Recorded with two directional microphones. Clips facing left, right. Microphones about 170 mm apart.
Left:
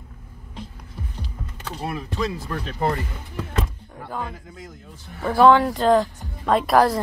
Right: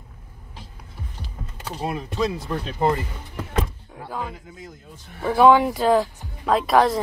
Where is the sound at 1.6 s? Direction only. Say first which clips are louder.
Right 2 dB; 15° right (ahead or behind).